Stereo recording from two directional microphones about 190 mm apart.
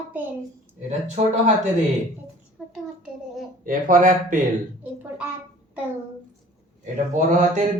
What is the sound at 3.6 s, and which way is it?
Speech, 45° right (ahead or behind).